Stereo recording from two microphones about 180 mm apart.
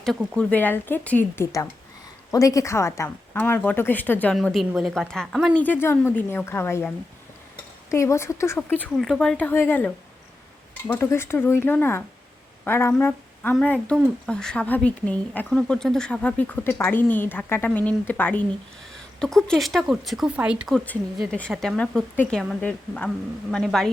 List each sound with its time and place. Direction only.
0.0 s speech: 5° left (ahead or behind)
5.6 s speech: 10° left (ahead or behind)
8.8 s a woman's voice: centre (ahead or behind)